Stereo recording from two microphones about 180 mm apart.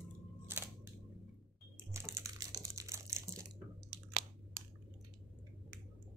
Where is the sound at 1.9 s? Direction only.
15° right (ahead or behind).